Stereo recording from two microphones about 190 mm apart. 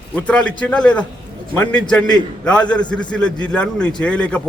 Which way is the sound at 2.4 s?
5° left (ahead or behind).